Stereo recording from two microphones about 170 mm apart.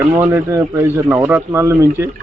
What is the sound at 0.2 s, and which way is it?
A man's voice, 15° right (ahead or behind).